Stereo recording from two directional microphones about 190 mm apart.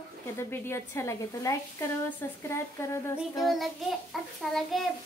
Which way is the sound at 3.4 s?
Centre (ahead or behind).